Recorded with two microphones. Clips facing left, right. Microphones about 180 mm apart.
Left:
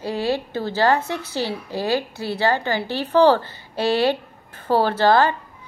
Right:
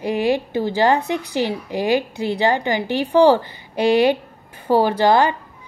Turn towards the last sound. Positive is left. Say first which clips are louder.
# right 1 dB
turn(degrees=-15)  # may be behind; listen again after turning